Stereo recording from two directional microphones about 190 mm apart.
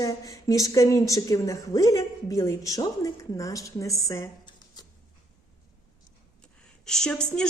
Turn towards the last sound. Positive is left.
turn(degrees=5)  # may be behind; listen again after turning